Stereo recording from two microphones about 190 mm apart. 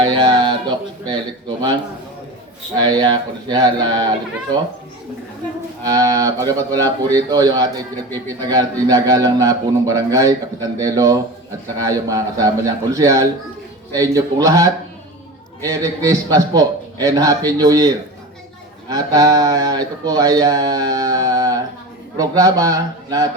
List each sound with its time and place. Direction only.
0.0 s a sound: 25° right (ahead or behind)
2.7 s speech: 20° right (ahead or behind)
5.8 s speech: 20° right (ahead or behind)